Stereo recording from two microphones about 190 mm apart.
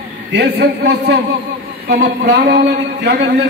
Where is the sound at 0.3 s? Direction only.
60° right (ahead or behind).